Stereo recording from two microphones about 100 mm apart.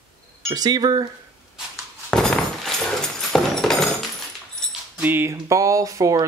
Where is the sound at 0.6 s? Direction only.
45° right (ahead or behind).